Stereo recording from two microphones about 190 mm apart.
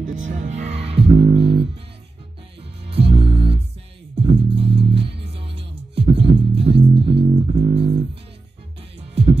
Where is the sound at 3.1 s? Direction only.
30° right (ahead or behind).